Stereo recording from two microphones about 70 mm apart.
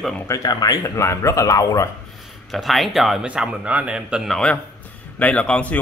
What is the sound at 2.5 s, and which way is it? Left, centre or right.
Speech, centre.